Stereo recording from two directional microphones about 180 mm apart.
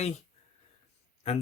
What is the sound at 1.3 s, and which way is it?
Speech, 40° left (ahead or behind).